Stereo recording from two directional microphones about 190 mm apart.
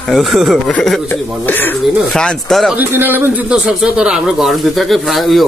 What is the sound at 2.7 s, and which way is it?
A man's voice, 10° right (ahead or behind).